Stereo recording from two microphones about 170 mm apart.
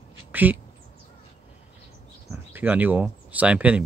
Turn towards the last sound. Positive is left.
turn(degrees=-5)  # may be behind; listen again after turning